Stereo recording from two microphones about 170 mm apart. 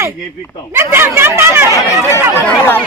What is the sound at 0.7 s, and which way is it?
A man's voice, 15° right (ahead or behind).